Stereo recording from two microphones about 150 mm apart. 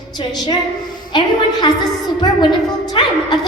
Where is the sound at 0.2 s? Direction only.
30° left (ahead or behind).